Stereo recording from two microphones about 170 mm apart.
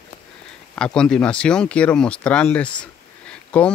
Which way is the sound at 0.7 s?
5° left (ahead or behind).